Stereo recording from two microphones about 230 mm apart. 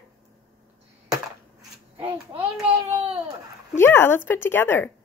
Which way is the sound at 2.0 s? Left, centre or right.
Right.